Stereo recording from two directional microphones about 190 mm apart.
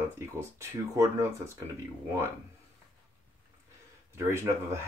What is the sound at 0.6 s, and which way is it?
Speech, 15° right (ahead or behind).